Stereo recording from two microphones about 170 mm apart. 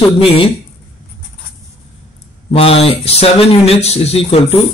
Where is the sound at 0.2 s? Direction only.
35° left (ahead or behind).